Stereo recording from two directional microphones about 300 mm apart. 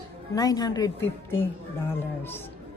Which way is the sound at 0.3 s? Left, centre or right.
Centre.